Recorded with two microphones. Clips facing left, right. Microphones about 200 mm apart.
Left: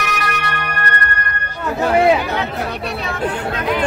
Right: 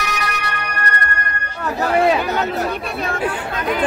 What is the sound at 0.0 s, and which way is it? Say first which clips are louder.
Music: left 2 dB; 55° left (ahead or behind).